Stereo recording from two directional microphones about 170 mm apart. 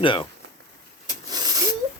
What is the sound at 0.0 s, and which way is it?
Speech, 30° left (ahead or behind).